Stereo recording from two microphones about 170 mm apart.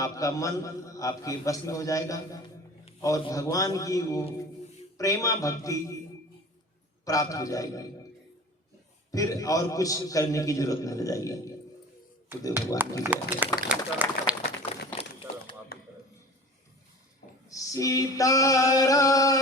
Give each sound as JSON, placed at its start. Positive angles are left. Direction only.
{"t": 0.0, "sound": "a man's voice", "side_deg": 20}
{"t": 7.0, "sound": "a man's voice", "side_deg": 20}
{"t": 9.1, "sound": "a man's voice", "side_deg": 20}
{"t": 13.0, "sound": "speech", "side_deg": -10}
{"t": 13.7, "sound": "run", "side_deg": -10}
{"t": 17.5, "sound": "a sound", "side_deg": 20}